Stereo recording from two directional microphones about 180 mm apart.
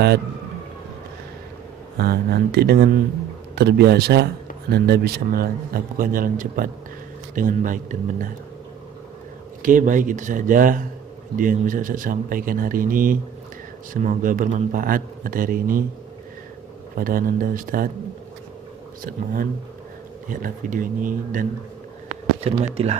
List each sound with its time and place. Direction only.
2.0 s a man's voice: 60° right (ahead or behind)
9.6 s speech: 45° right (ahead or behind)
16.9 s speech: 50° right (ahead or behind)
19.0 s speech: 50° right (ahead or behind)
22.1 s speech: 35° right (ahead or behind)